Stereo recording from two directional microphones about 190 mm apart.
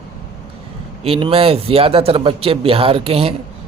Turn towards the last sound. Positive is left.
turn(degrees=-30)  # may be behind; listen again after turning